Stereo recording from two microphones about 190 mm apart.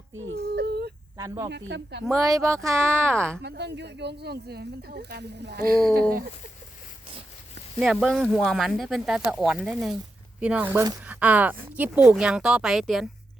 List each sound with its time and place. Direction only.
0.2 s whimper: 75° right (ahead or behind); by 0.9 s 60° right (ahead or behind)
1.1 s speech: 15° right (ahead or behind)
1.5 s speech: 65° right (ahead or behind)
2.2 s speech: 15° right (ahead or behind)
3.4 s speech: 60° right (ahead or behind)
7.8 s speech: centre (ahead or behind)